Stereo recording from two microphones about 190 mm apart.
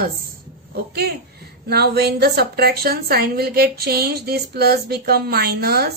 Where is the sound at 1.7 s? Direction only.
55° right (ahead or behind).